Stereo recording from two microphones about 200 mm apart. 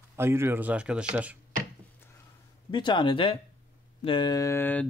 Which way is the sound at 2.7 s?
25° left (ahead or behind).